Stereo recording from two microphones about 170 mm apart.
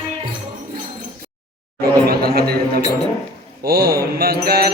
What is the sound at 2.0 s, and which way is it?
Music, 65° right (ahead or behind).